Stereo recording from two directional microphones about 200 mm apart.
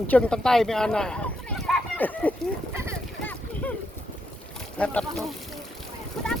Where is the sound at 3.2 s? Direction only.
10° left (ahead or behind).